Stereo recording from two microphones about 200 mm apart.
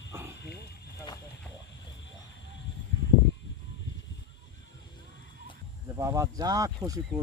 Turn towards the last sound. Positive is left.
turn(degrees=-20)  # may be behind; listen again after turning